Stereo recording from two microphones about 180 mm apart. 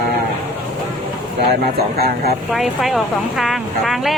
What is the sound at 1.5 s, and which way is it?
Speech, 60° right (ahead or behind).